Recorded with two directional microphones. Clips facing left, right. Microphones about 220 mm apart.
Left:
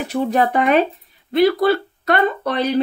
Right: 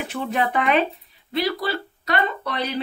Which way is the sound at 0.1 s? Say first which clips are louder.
Left 7 dB; 40° left (ahead or behind).